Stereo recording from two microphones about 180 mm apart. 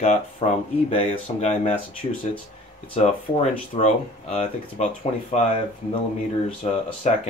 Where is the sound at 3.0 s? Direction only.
40° left (ahead or behind).